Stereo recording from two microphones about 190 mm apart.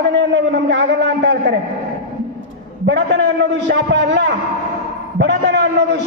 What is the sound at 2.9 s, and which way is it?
A man's voice, 70° right (ahead or behind).